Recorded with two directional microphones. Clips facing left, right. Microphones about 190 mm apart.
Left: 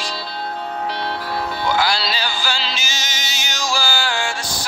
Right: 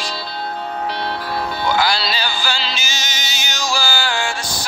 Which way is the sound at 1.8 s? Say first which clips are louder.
Right 1 dB; 65° right (ahead or behind).